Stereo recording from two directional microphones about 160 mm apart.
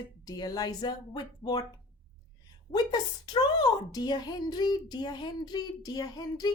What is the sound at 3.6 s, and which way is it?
A child's voice, 25° left (ahead or behind).